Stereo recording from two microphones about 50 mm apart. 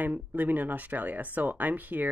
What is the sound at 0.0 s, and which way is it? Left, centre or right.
Speech, right.